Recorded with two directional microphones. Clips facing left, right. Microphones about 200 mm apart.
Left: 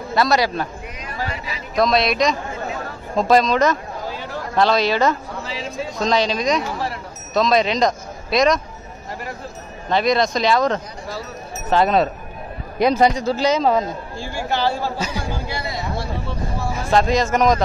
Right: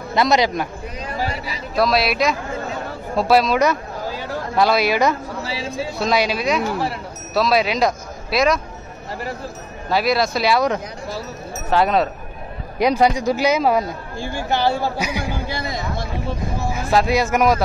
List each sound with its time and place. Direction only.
0.1 s a man's voice: 20° right (ahead or behind)
1.0 s a sound: 30° right (ahead or behind)
1.8 s a man's voice: 5° right (ahead or behind)
9.8 s a man's voice: 5° right (ahead or behind)
16.7 s a man's voice: 10° right (ahead or behind)